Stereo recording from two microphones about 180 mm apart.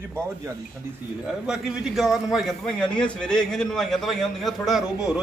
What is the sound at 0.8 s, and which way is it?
Speech, 15° right (ahead or behind).